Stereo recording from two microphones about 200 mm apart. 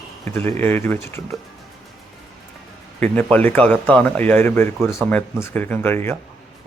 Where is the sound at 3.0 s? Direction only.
5° left (ahead or behind).